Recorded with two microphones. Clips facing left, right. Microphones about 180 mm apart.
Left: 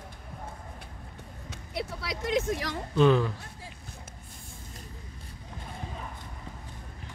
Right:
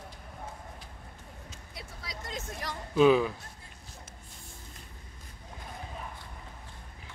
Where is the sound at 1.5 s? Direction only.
75° left (ahead or behind); by 2.7 s 90° left.